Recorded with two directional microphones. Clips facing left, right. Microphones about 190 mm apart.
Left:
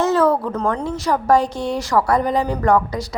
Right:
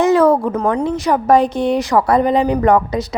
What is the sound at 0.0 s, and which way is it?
A woman's voice, 15° right (ahead or behind).